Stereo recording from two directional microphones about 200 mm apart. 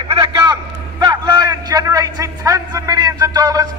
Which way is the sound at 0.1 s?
20° right (ahead or behind).